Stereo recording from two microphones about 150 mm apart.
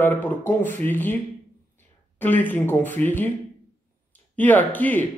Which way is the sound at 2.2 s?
10° left (ahead or behind).